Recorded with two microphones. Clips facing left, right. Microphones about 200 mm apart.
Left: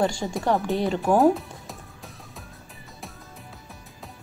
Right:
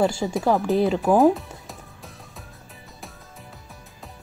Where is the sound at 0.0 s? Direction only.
Centre (ahead or behind).